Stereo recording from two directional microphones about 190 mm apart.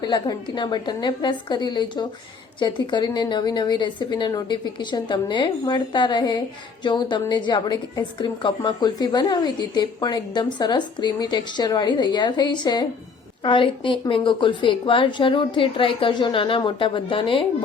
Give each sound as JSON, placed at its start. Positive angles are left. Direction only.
{"t": 0.0, "sound": "a woman's voice", "side_deg": 25}